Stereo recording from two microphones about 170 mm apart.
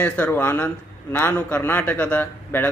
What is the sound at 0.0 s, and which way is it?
A man's voice, 10° left (ahead or behind).